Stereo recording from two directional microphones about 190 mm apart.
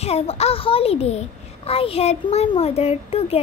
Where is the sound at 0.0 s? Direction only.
35° left (ahead or behind).